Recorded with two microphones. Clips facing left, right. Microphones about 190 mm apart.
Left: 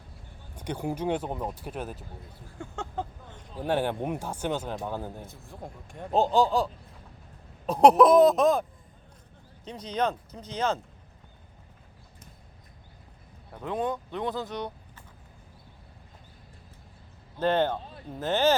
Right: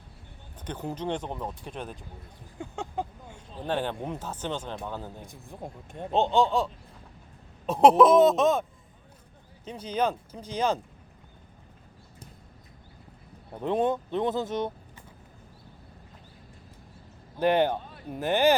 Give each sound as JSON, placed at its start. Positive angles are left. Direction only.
{"t": 0.5, "sound": "speech", "side_deg": 10}
{"t": 2.6, "sound": "speech", "side_deg": -15}
{"t": 3.6, "sound": "speech", "side_deg": 10}
{"t": 5.2, "sound": "speech", "side_deg": -15}
{"t": 6.1, "sound": "speech", "side_deg": 0}
{"t": 7.7, "sound": "speech", "side_deg": 0}
{"t": 9.6, "sound": "speech", "side_deg": -10}
{"t": 13.5, "sound": "speech", "side_deg": -25}
{"t": 17.3, "sound": "speech", "side_deg": -15}